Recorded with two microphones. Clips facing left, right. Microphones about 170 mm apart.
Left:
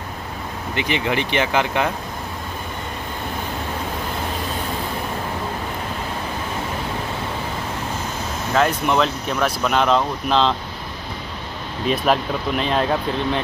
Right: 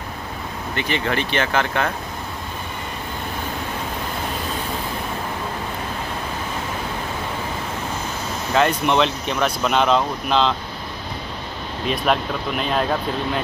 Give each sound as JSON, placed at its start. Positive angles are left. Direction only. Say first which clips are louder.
{"t": 0.7, "sound": "speech", "louder": "left 1 dB", "side_deg": 15}
{"t": 8.5, "sound": "speech", "louder": "right 1 dB", "side_deg": 0}
{"t": 11.9, "sound": "speech", "louder": "left 2 dB", "side_deg": 0}